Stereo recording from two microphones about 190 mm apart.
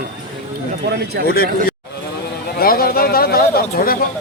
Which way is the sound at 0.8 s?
60° right (ahead or behind).